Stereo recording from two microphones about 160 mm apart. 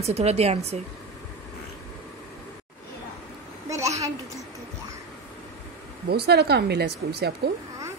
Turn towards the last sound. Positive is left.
turn(degrees=-85)